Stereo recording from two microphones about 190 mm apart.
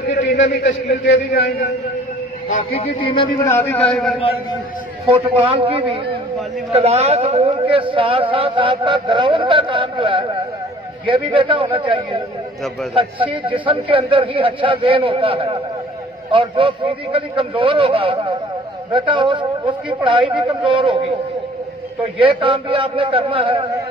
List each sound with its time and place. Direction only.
0.6 s a man's voice: 65° left (ahead or behind)
2.7 s speech: 30° left (ahead or behind)
3.4 s a man's voice: 10° left (ahead or behind)
3.9 s a man's voice: centre (ahead or behind)
5.1 s a man's voice: 30° right (ahead or behind)
22.2 s a man's voice: 30° right (ahead or behind)